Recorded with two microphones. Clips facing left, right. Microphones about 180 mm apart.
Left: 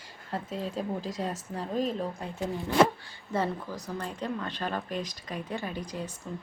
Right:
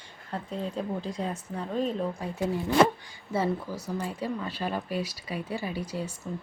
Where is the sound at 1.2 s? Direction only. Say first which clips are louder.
Right 1 dB; centre (ahead or behind).